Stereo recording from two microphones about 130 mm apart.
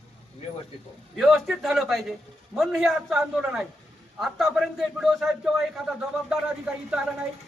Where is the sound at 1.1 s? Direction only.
Centre (ahead or behind).